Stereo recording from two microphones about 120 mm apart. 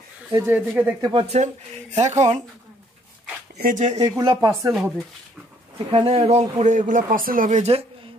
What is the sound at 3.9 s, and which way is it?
Speech, 35° right (ahead or behind).